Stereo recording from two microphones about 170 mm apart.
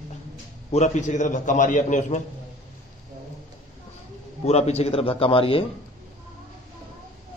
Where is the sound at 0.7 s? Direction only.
45° left (ahead or behind).